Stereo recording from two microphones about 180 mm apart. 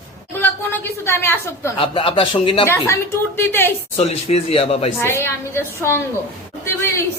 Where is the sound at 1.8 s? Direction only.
30° left (ahead or behind).